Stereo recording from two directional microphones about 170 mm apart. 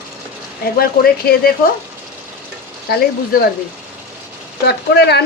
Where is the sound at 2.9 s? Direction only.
65° left (ahead or behind).